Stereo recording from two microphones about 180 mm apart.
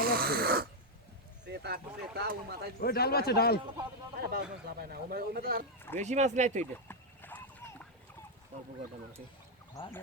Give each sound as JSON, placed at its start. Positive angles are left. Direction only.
{"t": 0.0, "sound": "a sound", "side_deg": -55}
{"t": 1.5, "sound": "speech", "side_deg": -65}
{"t": 2.8, "sound": "a man's voice", "side_deg": 60}
{"t": 4.2, "sound": "speech", "side_deg": -60}
{"t": 6.0, "sound": "speech", "side_deg": -40}
{"t": 6.8, "sound": "horse", "side_deg": 10}